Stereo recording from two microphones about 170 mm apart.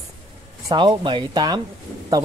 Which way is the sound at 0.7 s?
25° right (ahead or behind).